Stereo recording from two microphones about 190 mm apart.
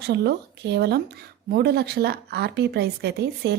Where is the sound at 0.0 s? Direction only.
60° right (ahead or behind).